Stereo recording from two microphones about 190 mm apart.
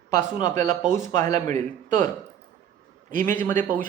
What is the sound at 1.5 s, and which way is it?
Speech, 40° right (ahead or behind).